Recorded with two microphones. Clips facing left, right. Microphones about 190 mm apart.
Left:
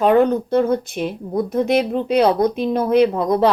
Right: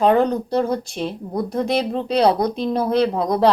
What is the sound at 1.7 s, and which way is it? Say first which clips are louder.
Speech: left 3 dB; 30° right (ahead or behind).